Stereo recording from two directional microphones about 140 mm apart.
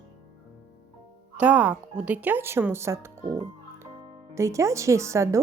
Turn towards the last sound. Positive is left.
turn(degrees=-20)  # may be behind; listen again after turning